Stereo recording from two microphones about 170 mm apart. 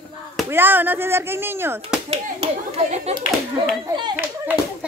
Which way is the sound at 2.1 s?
35° right (ahead or behind).